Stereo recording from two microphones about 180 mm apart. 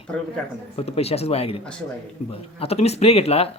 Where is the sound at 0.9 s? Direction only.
35° left (ahead or behind).